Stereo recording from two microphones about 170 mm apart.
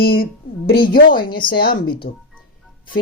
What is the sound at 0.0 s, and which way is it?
Speech, 60° left (ahead or behind).